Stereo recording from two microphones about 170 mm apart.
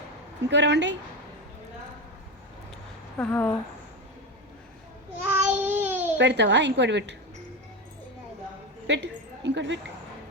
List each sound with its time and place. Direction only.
0.4 s a woman's voice: 90° right
3.2 s speech: 10° left (ahead or behind)
5.2 s child singing: 10° right (ahead or behind)
6.1 s a woman's voice: 90° right
8.9 s a woman's voice: 90° right